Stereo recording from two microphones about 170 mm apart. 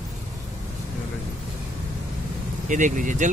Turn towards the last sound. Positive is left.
turn(degrees=-45)  # may be behind; listen again after turning